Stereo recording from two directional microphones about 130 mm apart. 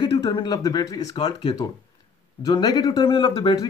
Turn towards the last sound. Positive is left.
turn(degrees=40)  # may be behind; listen again after turning